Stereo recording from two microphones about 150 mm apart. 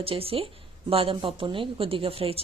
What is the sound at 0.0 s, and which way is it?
Speech, 40° right (ahead or behind).